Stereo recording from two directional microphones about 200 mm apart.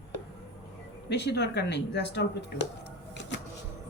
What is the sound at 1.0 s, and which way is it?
Speech, 55° left (ahead or behind).